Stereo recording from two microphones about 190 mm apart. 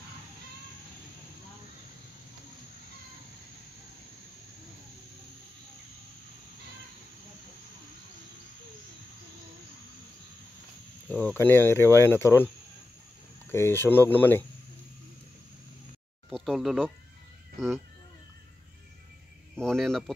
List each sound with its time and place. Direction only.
11.1 s speech: 5° left (ahead or behind)
13.5 s speech: 15° left (ahead or behind)
16.3 s a sound: centre (ahead or behind)
19.5 s speech: 5° left (ahead or behind)